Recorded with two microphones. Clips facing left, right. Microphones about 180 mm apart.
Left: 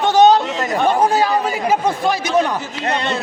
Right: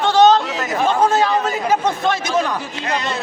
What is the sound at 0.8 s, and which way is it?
A man's voice, 15° left (ahead or behind).